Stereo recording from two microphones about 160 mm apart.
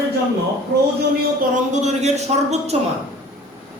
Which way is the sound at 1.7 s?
45° right (ahead or behind).